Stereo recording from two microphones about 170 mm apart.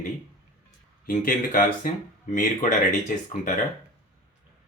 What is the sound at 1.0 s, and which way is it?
Speech, 55° left (ahead or behind).